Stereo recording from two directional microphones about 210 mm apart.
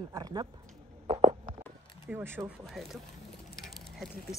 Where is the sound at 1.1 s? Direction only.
25° right (ahead or behind).